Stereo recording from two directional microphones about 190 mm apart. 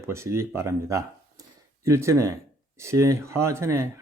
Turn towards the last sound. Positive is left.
turn(degrees=-15)  # may be behind; listen again after turning